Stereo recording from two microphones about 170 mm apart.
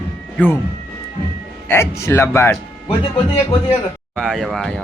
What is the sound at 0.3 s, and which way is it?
Speech, 10° left (ahead or behind).